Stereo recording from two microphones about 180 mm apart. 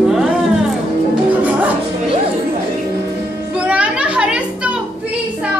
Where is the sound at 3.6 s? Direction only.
5° right (ahead or behind).